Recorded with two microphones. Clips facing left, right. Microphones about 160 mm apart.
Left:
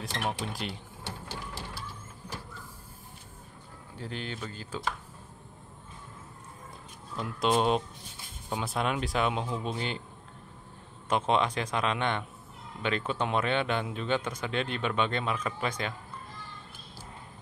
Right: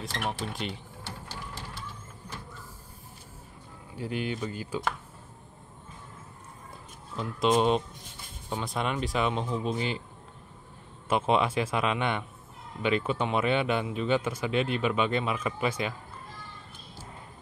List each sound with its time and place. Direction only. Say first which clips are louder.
0.0 s speech: even; centre (ahead or behind)
4.0 s speech: right 6 dB; 10° right (ahead or behind)
7.2 s speech: right 2 dB; centre (ahead or behind)
11.1 s speech: right 1 dB; 5° right (ahead or behind)